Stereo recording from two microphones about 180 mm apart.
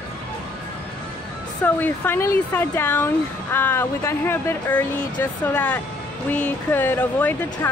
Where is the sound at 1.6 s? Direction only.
10° left (ahead or behind).